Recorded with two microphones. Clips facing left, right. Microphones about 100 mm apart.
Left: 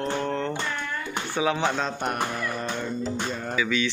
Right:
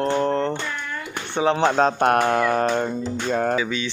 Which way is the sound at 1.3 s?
30° right (ahead or behind).